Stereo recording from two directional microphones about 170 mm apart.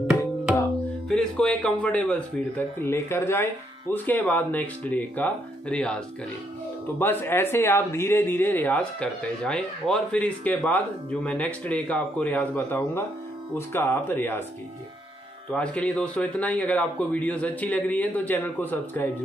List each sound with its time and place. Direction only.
1.0 s speech: 5° left (ahead or behind)
15.5 s speech: 10° left (ahead or behind)